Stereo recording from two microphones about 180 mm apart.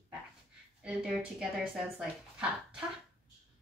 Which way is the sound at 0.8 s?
5° right (ahead or behind).